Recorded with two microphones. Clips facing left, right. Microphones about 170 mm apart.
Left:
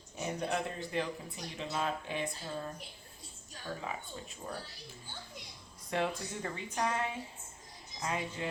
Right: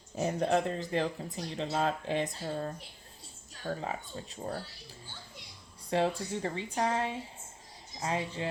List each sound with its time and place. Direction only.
0.2 s speech: 35° right (ahead or behind)
2.4 s speech: 45° right (ahead or behind)
5.9 s speech: 30° right (ahead or behind)